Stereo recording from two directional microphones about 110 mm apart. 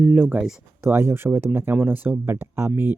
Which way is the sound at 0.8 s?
20° right (ahead or behind).